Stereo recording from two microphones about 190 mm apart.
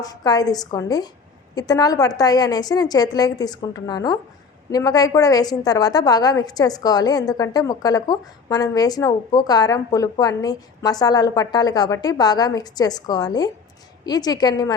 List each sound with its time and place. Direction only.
0.0 s a woman's voice: 20° left (ahead or behind)